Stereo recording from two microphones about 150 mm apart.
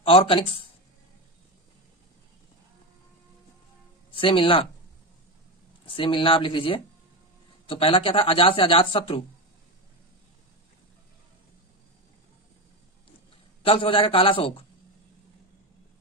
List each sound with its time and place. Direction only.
0.0 s speech: 35° left (ahead or behind)
4.1 s speech: 35° left (ahead or behind)
5.9 s speech: 35° left (ahead or behind)
13.7 s speech: 35° left (ahead or behind)